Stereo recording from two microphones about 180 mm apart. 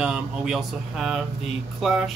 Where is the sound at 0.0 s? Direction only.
5° right (ahead or behind).